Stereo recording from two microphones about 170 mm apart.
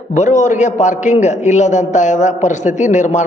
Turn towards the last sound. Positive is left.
turn(degrees=45)  # may be behind; listen again after turning